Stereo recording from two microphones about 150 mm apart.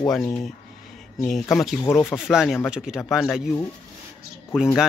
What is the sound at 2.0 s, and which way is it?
Speech, 5° right (ahead or behind).